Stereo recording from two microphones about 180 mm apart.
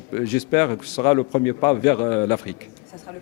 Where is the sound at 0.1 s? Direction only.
15° left (ahead or behind).